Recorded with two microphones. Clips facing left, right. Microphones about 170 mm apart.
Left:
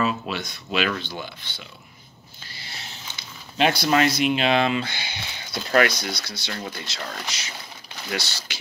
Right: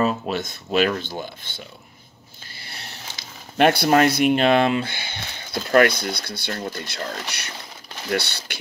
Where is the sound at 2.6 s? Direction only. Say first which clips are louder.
Right 1 dB; 60° right (ahead or behind).